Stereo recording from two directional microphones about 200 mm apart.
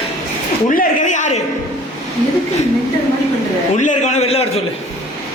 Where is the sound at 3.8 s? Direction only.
35° left (ahead or behind).